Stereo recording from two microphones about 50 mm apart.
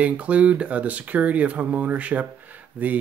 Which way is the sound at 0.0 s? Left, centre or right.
Right.